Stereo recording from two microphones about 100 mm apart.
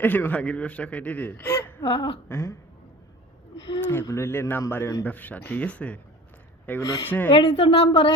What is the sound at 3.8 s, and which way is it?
Speech, 20° left (ahead or behind).